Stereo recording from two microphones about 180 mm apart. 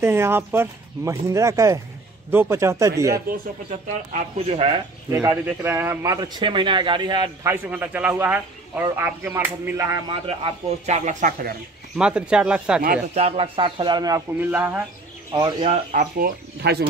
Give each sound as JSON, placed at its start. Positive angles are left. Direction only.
{"t": 0.0, "sound": "a man's voice", "side_deg": -15}
{"t": 3.7, "sound": "speech", "side_deg": -40}
{"t": 5.1, "sound": "a man's voice", "side_deg": -15}
{"t": 6.1, "sound": "speech", "side_deg": -25}
{"t": 7.4, "sound": "a man's voice", "side_deg": -10}
{"t": 10.0, "sound": "speech", "side_deg": -30}
{"t": 12.0, "sound": "speech", "side_deg": -5}
{"t": 13.1, "sound": "speech", "side_deg": -35}
{"t": 14.4, "sound": "a man's voice", "side_deg": -10}
{"t": 15.6, "sound": "speech", "side_deg": -40}